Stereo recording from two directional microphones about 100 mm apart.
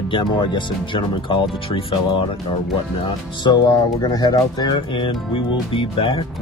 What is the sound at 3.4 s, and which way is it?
Speech, 45° left (ahead or behind).